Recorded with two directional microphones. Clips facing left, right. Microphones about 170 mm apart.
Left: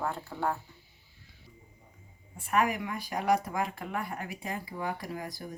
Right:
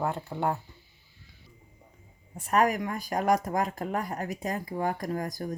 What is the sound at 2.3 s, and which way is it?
Speech, 45° right (ahead or behind).